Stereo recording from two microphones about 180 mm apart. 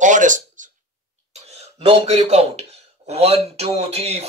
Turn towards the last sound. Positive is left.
turn(degrees=-35)  # may be behind; listen again after turning